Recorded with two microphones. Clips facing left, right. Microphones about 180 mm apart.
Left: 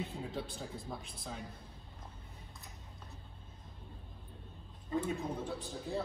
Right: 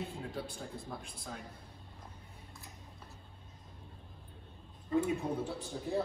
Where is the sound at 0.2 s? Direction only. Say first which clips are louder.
Even; centre (ahead or behind).